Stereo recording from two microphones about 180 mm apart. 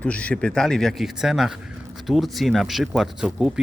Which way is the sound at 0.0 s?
5° left (ahead or behind).